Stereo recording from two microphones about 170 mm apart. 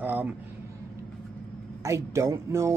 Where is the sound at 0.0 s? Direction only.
10° right (ahead or behind).